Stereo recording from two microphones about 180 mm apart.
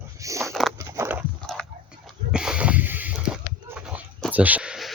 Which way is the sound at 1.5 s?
Centre (ahead or behind).